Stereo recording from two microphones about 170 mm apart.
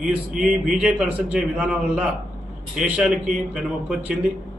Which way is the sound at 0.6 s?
5° right (ahead or behind).